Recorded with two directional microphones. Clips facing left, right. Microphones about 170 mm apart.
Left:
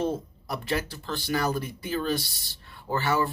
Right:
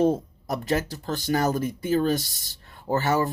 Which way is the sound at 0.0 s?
45° right (ahead or behind).